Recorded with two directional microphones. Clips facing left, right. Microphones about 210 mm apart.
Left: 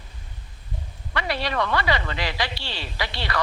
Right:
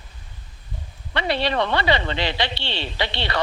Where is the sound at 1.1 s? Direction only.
25° right (ahead or behind).